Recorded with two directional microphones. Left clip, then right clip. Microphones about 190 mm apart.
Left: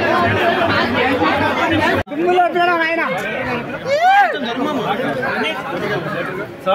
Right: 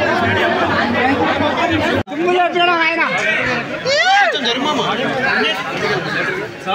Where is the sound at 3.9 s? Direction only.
50° left (ahead or behind).